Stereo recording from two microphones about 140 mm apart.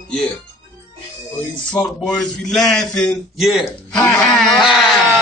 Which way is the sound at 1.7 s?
5° left (ahead or behind).